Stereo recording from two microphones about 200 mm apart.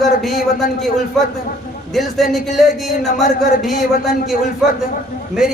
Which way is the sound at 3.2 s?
40° left (ahead or behind).